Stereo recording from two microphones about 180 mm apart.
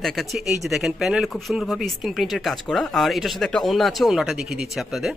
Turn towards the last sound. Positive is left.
turn(degrees=0)  # may be behind; listen again after turning